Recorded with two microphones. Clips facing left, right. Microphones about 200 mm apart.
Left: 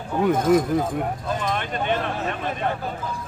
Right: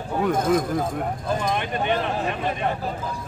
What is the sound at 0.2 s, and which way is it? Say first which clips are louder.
Speech: left 3 dB; 5° left (ahead or behind).